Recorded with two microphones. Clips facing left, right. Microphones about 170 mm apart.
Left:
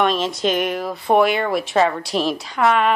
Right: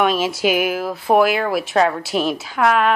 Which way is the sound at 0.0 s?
5° right (ahead or behind).